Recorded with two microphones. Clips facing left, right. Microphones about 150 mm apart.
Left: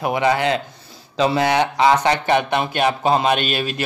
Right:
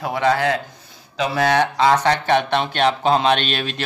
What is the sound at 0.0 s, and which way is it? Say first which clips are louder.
Speech: left 1 dB; 15° left (ahead or behind).